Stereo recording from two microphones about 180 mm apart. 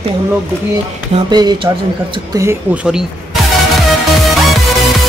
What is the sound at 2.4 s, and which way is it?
Speech, 10° right (ahead or behind).